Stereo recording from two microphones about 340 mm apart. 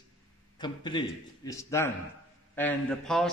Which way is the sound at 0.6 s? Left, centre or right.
Centre.